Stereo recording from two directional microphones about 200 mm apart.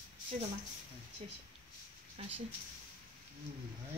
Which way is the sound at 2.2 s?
30° right (ahead or behind).